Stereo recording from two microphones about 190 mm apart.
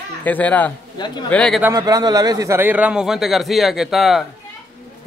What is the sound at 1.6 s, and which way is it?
A man's voice, 20° right (ahead or behind).